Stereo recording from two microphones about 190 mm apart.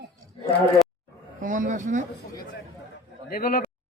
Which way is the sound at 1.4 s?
40° right (ahead or behind).